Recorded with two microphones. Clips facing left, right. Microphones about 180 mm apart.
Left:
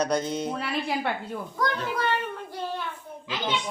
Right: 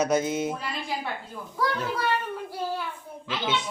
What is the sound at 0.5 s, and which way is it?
Speech, 70° left (ahead or behind).